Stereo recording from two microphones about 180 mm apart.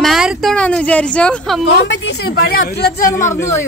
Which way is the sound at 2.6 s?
55° left (ahead or behind).